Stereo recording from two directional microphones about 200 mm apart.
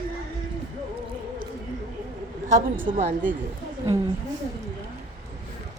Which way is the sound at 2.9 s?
40° right (ahead or behind).